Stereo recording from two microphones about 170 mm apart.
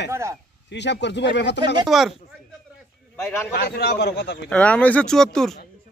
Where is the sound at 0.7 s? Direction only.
90° left.